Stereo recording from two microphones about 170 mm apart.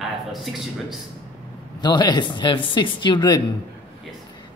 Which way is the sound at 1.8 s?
25° left (ahead or behind).